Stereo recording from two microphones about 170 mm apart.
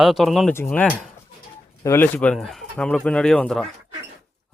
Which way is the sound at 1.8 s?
10° left (ahead or behind).